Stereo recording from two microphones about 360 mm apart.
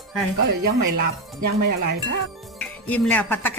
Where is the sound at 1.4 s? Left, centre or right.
Right.